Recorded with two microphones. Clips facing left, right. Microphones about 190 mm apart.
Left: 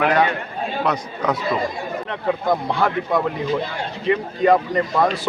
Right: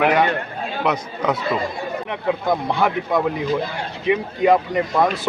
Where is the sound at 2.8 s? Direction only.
5° right (ahead or behind).